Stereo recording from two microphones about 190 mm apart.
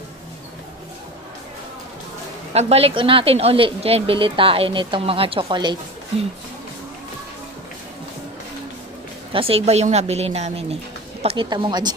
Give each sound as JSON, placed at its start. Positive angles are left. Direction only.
{"t": 2.5, "sound": "a woman's voice", "side_deg": -30}
{"t": 9.3, "sound": "a woman's voice", "side_deg": -30}